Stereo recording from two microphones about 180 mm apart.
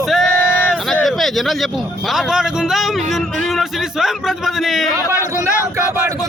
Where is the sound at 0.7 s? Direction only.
Centre (ahead or behind).